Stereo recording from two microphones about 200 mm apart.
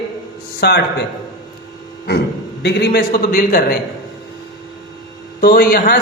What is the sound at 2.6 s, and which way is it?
A man's voice, 55° left (ahead or behind).